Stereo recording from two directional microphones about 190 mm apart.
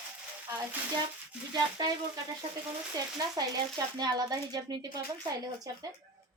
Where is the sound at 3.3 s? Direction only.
20° right (ahead or behind).